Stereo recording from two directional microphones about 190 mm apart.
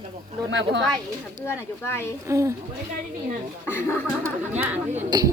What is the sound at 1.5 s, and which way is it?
Speech, 15° left (ahead or behind).